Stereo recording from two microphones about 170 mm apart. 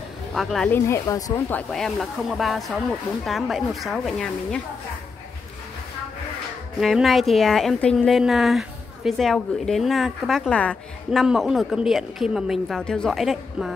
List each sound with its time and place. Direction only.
0.3 s a woman's voice: centre (ahead or behind)
0.7 s speech: 15° left (ahead or behind)
1.7 s a woman's voice: centre (ahead or behind)
6.8 s a woman's voice: centre (ahead or behind)